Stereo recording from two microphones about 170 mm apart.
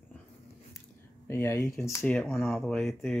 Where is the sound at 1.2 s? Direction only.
15° left (ahead or behind).